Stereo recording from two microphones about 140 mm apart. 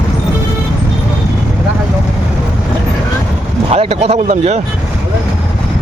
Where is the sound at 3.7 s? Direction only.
50° right (ahead or behind).